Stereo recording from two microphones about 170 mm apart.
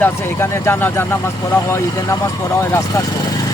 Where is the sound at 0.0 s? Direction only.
15° left (ahead or behind).